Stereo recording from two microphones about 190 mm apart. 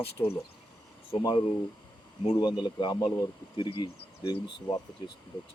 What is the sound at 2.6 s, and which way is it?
Speech, 25° left (ahead or behind).